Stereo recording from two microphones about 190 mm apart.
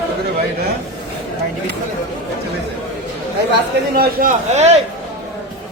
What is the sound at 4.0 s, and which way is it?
Speech, 40° right (ahead or behind).